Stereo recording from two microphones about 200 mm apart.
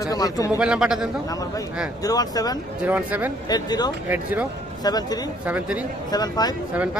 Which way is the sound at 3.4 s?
20° left (ahead or behind).